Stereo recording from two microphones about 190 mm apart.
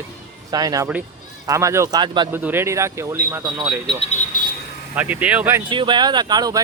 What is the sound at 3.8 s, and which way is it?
Speech, 30° left (ahead or behind).